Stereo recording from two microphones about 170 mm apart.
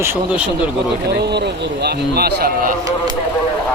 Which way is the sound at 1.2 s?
80° right.